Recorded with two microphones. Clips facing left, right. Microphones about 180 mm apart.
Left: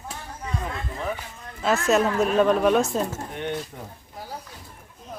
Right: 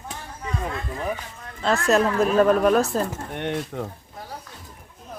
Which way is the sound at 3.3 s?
70° right (ahead or behind).